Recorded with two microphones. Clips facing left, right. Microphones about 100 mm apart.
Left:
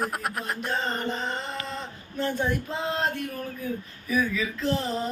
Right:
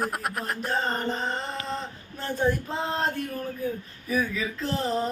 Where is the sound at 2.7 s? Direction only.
35° right (ahead or behind).